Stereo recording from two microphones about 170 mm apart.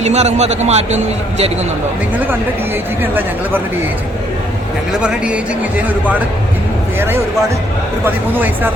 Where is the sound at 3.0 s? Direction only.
10° right (ahead or behind).